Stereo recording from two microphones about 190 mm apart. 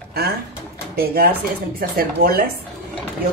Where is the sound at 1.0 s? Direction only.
50° right (ahead or behind).